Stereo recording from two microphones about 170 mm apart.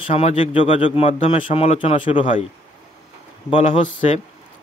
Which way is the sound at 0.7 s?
40° left (ahead or behind).